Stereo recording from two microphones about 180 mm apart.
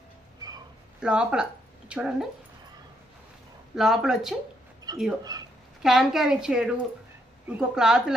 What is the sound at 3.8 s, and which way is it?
Speech, centre (ahead or behind).